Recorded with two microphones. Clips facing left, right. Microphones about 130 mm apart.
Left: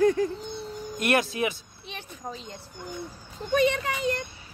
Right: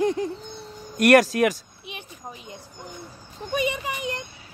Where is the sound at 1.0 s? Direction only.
75° right (ahead or behind).